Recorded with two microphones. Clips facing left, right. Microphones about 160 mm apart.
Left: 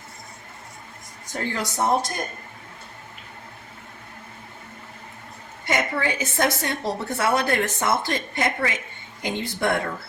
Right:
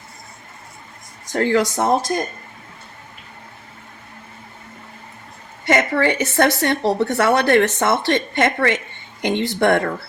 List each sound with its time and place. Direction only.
1.3 s speech: 90° right
5.6 s a woman's voice: 85° right